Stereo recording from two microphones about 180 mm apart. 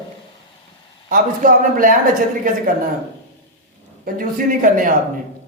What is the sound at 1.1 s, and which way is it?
Speech, 50° right (ahead or behind).